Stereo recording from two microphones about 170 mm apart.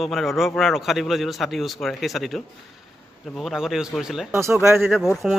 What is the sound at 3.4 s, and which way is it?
Speech, centre (ahead or behind).